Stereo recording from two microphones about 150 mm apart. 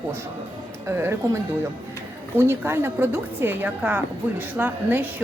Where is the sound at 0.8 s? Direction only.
15° right (ahead or behind).